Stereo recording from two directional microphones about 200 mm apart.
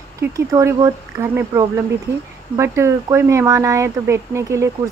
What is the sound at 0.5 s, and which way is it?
Speech, 15° right (ahead or behind).